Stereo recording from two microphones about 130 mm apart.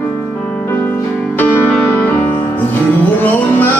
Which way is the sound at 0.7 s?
20° left (ahead or behind).